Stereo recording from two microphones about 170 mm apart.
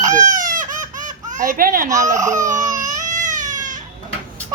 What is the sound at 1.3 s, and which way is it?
Speech, 50° right (ahead or behind).